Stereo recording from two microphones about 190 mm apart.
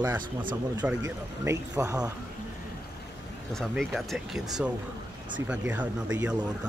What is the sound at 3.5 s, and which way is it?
Speech, centre (ahead or behind).